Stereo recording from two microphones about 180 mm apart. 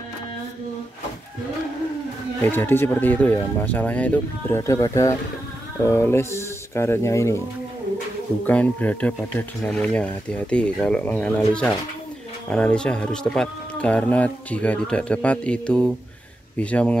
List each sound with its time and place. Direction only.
2.4 s speech: 10° left (ahead or behind)
8.5 s speech: 10° left (ahead or behind)